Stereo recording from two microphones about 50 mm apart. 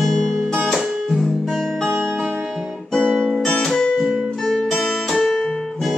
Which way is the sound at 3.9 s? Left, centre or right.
Centre.